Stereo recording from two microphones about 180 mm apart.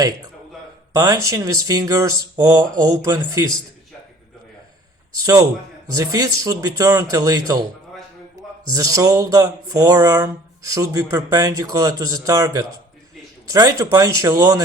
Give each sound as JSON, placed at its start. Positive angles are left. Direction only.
{"t": 0.9, "sound": "speech", "side_deg": -20}
{"t": 5.2, "sound": "speech", "side_deg": -20}
{"t": 8.7, "sound": "speech", "side_deg": -20}